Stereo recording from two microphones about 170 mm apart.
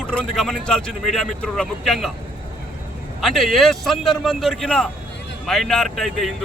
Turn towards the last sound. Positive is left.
turn(degrees=0)  # may be behind; listen again after turning